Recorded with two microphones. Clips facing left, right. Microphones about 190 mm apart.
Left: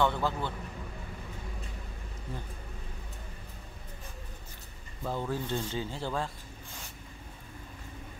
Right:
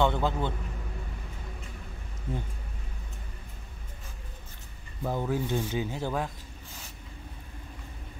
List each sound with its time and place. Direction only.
0.0 s speech: 20° right (ahead or behind)
5.0 s speech: 15° right (ahead or behind)